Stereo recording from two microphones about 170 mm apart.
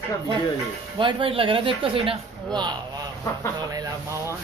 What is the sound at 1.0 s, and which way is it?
Speech, 30° right (ahead or behind).